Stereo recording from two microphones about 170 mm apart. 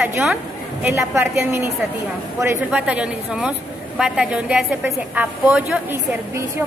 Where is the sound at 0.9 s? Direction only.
15° right (ahead or behind).